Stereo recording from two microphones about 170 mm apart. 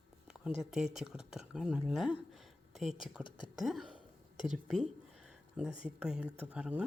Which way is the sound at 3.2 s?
25° left (ahead or behind).